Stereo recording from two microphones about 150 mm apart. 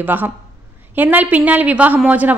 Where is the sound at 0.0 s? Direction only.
15° right (ahead or behind).